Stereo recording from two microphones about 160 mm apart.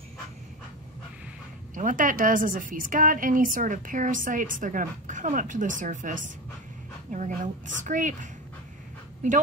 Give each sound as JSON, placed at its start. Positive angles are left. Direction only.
{"t": 1.8, "sound": "a woman's voice", "side_deg": -55}